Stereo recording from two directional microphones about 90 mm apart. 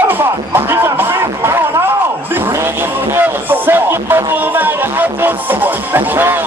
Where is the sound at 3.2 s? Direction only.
20° right (ahead or behind).